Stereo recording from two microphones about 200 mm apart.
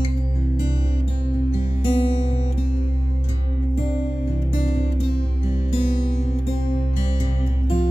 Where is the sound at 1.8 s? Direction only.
25° left (ahead or behind).